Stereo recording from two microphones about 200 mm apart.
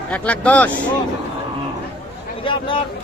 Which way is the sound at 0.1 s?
5° left (ahead or behind).